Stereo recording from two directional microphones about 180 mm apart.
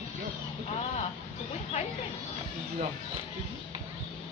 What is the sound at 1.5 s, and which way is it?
Speech, 35° left (ahead or behind).